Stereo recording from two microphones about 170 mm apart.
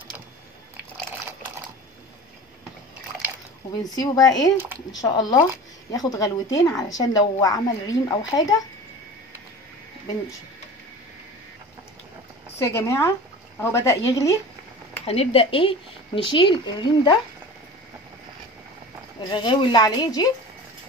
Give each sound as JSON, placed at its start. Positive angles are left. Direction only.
{"t": 3.8, "sound": "speech", "side_deg": 20}
{"t": 12.5, "sound": "speech", "side_deg": 15}
{"t": 15.0, "sound": "speech", "side_deg": 35}
{"t": 19.3, "sound": "speech", "side_deg": 30}